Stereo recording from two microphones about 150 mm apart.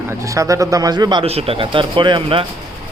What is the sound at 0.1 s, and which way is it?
Speech, 20° right (ahead or behind).